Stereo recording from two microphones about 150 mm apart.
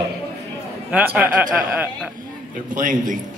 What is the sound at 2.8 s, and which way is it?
Speech, 65° right (ahead or behind).